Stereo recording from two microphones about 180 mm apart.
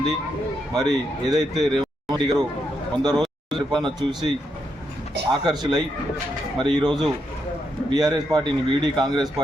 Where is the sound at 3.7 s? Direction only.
25° right (ahead or behind).